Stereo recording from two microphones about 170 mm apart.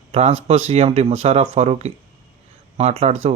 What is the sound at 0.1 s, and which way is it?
Speech, 40° right (ahead or behind).